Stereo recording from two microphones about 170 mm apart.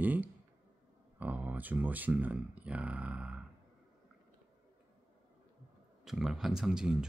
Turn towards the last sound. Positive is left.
turn(degrees=-5)  # may be behind; listen again after turning